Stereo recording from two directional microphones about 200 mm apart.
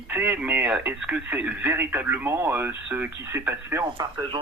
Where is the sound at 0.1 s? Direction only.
10° right (ahead or behind).